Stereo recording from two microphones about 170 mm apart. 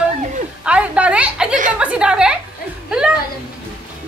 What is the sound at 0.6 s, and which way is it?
A woman's voice, 5° right (ahead or behind).